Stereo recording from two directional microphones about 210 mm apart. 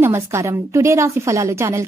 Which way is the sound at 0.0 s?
15° right (ahead or behind).